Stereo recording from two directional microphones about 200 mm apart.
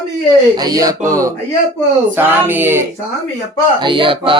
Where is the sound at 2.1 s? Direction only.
10° right (ahead or behind).